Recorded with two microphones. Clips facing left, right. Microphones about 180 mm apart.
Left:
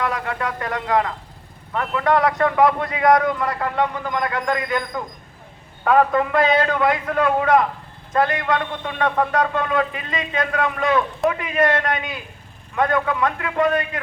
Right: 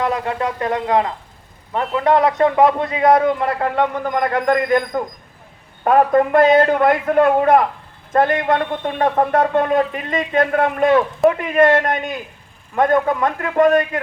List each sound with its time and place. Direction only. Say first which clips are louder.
0.0 s a man's voice: right 4 dB; 25° right (ahead or behind)
3.6 s a man's voice: right 4 dB; 50° right (ahead or behind)